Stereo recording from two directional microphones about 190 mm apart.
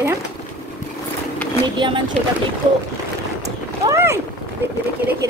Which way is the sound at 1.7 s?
25° right (ahead or behind).